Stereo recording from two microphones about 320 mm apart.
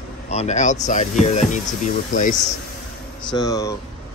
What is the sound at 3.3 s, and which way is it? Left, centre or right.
Speech, centre.